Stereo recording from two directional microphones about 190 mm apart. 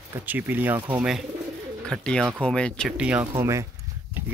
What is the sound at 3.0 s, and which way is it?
Speech, 5° right (ahead or behind).